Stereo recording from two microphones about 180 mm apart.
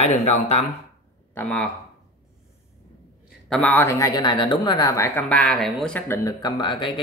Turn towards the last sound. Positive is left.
turn(degrees=25)  # may be behind; listen again after turning